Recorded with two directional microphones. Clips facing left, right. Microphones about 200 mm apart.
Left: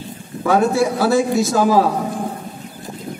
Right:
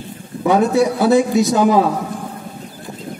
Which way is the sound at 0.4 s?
20° right (ahead or behind).